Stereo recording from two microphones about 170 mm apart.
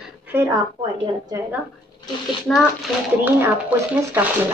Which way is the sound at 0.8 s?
30° right (ahead or behind).